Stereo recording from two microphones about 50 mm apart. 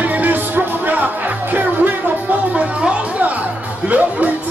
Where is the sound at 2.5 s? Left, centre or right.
Right.